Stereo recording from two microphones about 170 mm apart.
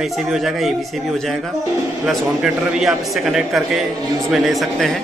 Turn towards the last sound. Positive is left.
turn(degrees=0)  # may be behind; listen again after turning